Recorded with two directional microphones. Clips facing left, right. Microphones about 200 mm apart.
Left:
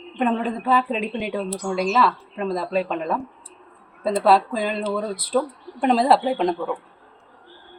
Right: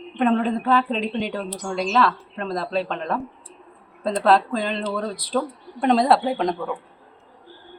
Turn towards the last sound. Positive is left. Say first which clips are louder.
# left 2 dB
turn(degrees=5)  # may be behind; listen again after turning